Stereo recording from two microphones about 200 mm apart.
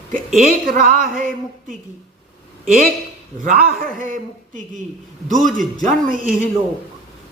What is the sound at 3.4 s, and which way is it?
A woman's voice, 45° right (ahead or behind).